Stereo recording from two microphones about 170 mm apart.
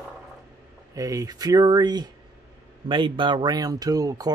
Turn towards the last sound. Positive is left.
turn(degrees=-20)  # may be behind; listen again after turning